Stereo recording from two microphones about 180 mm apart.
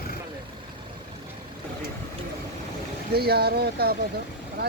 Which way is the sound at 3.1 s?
60° right (ahead or behind).